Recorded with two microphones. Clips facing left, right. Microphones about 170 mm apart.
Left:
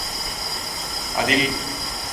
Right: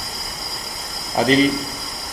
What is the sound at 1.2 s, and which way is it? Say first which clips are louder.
Speech: right 6 dB; 35° right (ahead or behind).